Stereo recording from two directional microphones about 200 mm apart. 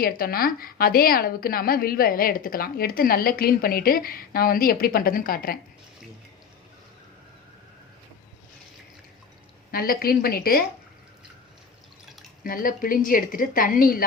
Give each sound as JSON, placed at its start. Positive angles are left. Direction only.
{"t": 0.0, "sound": "a woman's voice", "side_deg": 45}
{"t": 9.7, "sound": "a woman's voice", "side_deg": 50}
{"t": 12.4, "sound": "a woman's voice", "side_deg": 45}